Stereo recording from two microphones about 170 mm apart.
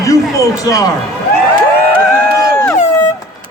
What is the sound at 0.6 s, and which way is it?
Speech, 20° left (ahead or behind).